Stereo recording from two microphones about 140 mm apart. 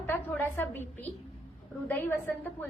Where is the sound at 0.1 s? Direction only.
15° left (ahead or behind).